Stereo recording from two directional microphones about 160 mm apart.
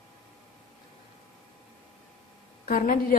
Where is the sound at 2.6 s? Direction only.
60° left (ahead or behind).